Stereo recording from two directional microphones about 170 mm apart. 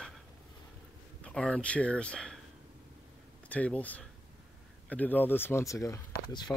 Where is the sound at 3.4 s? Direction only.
10° left (ahead or behind).